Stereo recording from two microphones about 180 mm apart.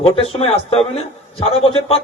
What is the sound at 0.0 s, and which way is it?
A man's voice, 35° left (ahead or behind).